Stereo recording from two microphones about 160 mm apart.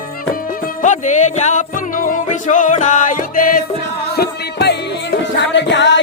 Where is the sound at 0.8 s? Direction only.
50° left (ahead or behind).